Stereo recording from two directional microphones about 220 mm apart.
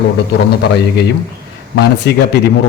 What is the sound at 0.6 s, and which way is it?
A man's voice, 50° left (ahead or behind).